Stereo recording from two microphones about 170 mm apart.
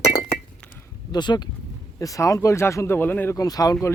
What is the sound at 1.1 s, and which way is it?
Speech, 25° left (ahead or behind).